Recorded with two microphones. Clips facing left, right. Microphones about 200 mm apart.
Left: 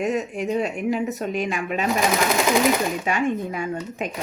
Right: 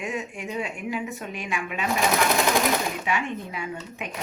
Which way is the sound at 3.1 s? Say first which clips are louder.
Left 6 dB; 45° left (ahead or behind).